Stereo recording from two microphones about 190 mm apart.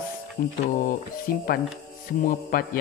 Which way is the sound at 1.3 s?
50° left (ahead or behind).